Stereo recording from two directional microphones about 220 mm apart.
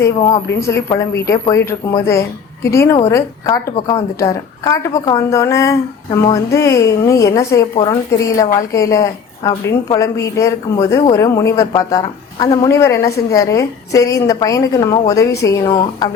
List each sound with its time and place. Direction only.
0.0 s a woman's voice: 15° left (ahead or behind)